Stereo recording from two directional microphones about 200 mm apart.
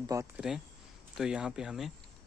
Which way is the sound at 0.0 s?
15° right (ahead or behind).